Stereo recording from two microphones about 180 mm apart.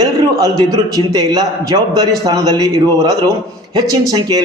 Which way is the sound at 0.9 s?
20° right (ahead or behind).